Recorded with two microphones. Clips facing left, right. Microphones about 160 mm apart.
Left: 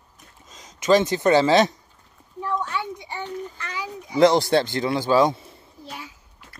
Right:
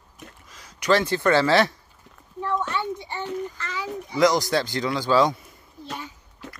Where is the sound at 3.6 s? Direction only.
15° left (ahead or behind).